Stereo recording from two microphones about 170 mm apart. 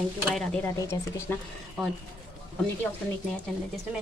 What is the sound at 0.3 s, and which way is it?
Speech, 5° left (ahead or behind).